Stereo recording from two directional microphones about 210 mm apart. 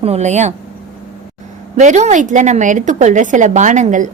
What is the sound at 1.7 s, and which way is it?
A woman's voice, 35° right (ahead or behind).